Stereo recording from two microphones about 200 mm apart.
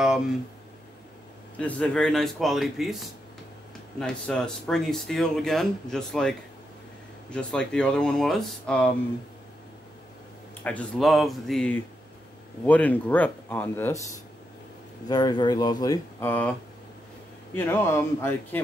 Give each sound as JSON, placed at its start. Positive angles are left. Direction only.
{"t": 1.6, "sound": "speech", "side_deg": 5}
{"t": 10.6, "sound": "speech", "side_deg": 5}
{"t": 15.0, "sound": "speech", "side_deg": 20}
{"t": 17.6, "sound": "speech", "side_deg": 10}